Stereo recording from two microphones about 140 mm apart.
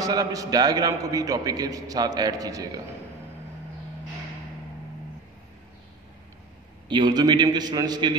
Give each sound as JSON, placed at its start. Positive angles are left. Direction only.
{"t": 0.0, "sound": "a man's voice", "side_deg": -25}
{"t": 6.9, "sound": "a man's voice", "side_deg": -30}